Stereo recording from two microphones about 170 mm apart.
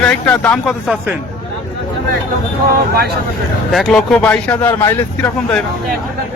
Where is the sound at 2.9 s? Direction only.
65° right (ahead or behind).